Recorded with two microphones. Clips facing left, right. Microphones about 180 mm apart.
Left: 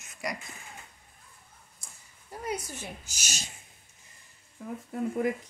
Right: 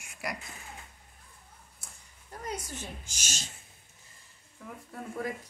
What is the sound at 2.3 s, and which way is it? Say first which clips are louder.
A woman's voice: left 3 dB; 10° left (ahead or behind).